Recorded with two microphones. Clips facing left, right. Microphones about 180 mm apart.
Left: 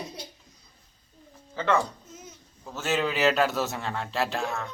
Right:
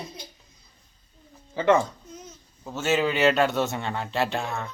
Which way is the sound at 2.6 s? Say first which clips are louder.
Right 3 dB; centre (ahead or behind).